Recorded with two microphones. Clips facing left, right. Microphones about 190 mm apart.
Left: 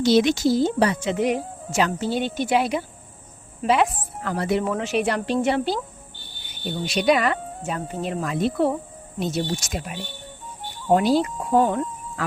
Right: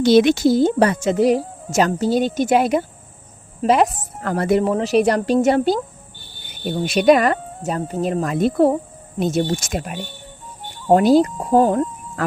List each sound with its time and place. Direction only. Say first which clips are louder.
0.0 s speech: right 5 dB; 60° right (ahead or behind)
1.1 s speech: right 6 dB; 35° right (ahead or behind)
4.7 s speech: right 7 dB; 35° right (ahead or behind)